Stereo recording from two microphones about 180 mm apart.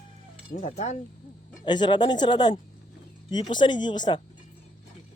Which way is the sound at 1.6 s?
25° left (ahead or behind).